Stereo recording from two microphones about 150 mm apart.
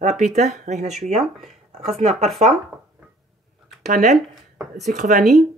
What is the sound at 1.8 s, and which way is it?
Speech, 45° right (ahead or behind).